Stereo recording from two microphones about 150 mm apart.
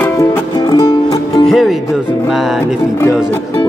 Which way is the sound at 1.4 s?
Centre (ahead or behind).